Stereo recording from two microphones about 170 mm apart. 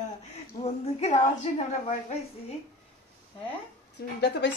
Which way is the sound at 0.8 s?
45° left (ahead or behind).